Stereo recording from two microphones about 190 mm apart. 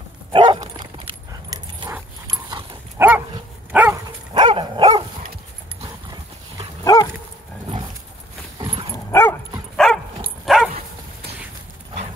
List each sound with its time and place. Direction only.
0.3 s dog: 25° right (ahead or behind); by 4.0 s 5° right (ahead or behind)
4.3 s dog: 25° right (ahead or behind)
6.8 s dog: 20° left (ahead or behind)
8.5 s dog: 25° right (ahead or behind)
8.9 s dog: 15° left (ahead or behind)
10.4 s dog: centre (ahead or behind)